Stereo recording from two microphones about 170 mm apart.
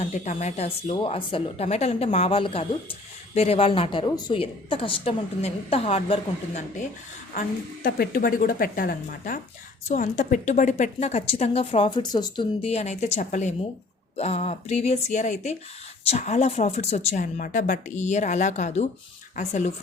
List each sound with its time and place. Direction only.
0.0 s a woman's voice: 45° left (ahead or behind)
7.9 s a woman's voice: 60° left (ahead or behind); by 12.5 s 25° left (ahead or behind)
12.6 s a woman's voice: 40° left (ahead or behind)